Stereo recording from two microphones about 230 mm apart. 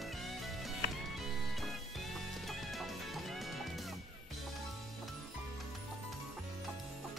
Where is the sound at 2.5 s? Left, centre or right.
Centre.